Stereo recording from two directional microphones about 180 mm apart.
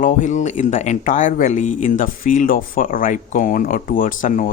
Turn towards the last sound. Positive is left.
turn(degrees=45)  # may be behind; listen again after turning